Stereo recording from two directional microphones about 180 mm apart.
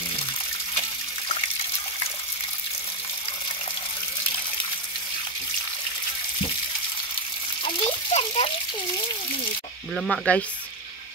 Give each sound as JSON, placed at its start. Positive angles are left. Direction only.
{"t": 7.6, "sound": "water", "side_deg": 30}
{"t": 9.9, "sound": "speech", "side_deg": 0}